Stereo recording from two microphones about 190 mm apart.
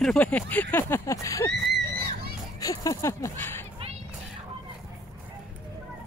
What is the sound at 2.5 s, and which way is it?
Speech, 20° left (ahead or behind).